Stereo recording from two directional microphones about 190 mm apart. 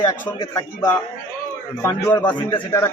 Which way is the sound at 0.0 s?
20° left (ahead or behind).